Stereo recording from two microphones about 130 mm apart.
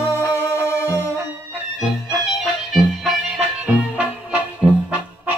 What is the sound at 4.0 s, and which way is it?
Music, 10° right (ahead or behind).